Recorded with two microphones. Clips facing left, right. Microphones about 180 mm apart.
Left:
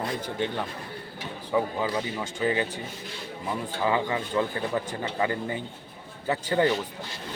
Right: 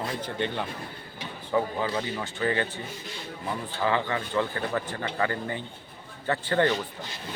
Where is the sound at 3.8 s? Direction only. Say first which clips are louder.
Even; 15° left (ahead or behind).